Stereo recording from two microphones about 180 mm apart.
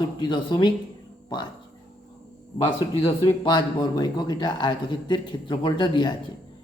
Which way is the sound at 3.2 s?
25° left (ahead or behind).